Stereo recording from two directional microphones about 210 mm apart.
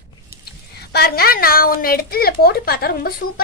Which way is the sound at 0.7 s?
50° left (ahead or behind).